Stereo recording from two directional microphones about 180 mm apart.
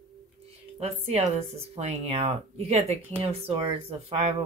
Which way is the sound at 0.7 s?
35° right (ahead or behind).